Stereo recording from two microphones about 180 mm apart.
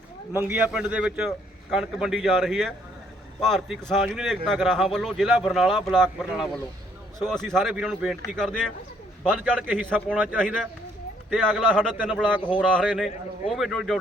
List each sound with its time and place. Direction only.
0.4 s a man's voice: 10° right (ahead or behind)
10.3 s a man's voice: 5° left (ahead or behind)
12.4 s speech: 25° left (ahead or behind)
12.7 s speech: 5° right (ahead or behind)